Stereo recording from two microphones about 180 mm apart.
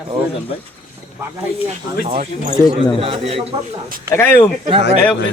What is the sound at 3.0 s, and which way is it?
Speech, 30° right (ahead or behind).